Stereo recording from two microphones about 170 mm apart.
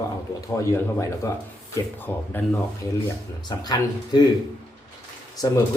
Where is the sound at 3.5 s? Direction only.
25° left (ahead or behind).